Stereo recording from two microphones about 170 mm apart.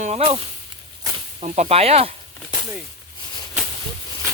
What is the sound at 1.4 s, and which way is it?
Speech, 40° right (ahead or behind).